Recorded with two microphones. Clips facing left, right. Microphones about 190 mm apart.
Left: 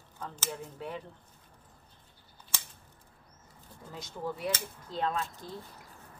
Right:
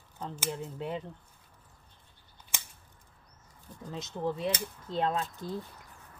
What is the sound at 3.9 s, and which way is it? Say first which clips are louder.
Speech: right 4 dB; 20° right (ahead or behind).